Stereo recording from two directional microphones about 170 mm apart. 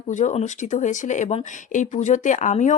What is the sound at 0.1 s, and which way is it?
Speech, 45° left (ahead or behind).